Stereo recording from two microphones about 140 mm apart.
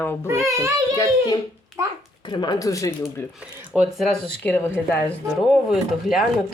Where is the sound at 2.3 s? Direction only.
30° left (ahead or behind).